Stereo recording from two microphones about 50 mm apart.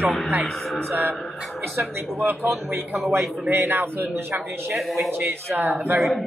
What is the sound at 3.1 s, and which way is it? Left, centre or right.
A man's voice, right.